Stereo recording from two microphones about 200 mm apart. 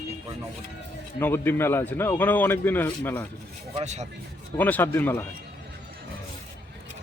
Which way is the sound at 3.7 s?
35° right (ahead or behind).